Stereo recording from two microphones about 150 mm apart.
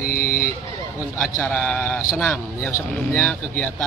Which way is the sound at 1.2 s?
10° left (ahead or behind).